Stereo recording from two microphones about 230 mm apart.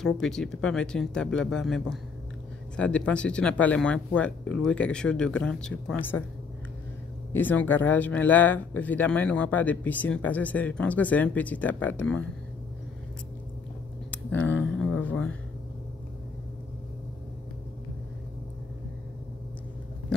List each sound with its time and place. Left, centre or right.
0.0 s speech: centre
7.3 s speech: centre
14.1 s a sound: centre